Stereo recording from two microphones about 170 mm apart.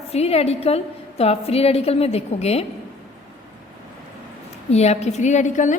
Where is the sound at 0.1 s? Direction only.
35° left (ahead or behind).